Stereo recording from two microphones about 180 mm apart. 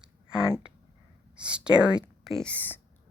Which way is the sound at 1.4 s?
5° right (ahead or behind).